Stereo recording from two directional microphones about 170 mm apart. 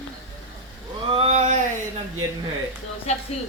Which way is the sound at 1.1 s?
40° right (ahead or behind).